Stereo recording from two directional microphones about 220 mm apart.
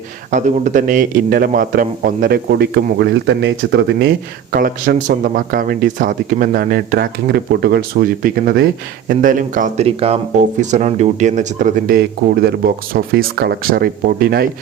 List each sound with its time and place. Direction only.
0.3 s a man's voice: 35° right (ahead or behind)